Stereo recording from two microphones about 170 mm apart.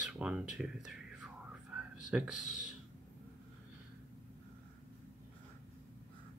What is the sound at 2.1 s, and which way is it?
Speech, 5° right (ahead or behind).